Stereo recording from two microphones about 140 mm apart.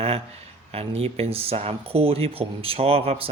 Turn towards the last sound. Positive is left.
turn(degrees=-45)  # may be behind; listen again after turning